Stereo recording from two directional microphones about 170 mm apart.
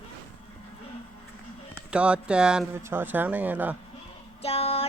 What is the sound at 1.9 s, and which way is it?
Speech, 5° right (ahead or behind).